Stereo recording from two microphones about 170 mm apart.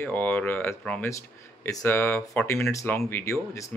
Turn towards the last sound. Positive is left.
turn(degrees=15)  # may be behind; listen again after turning